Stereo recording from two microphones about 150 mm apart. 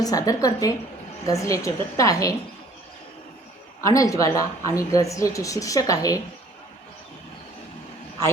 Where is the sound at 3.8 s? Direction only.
20° left (ahead or behind).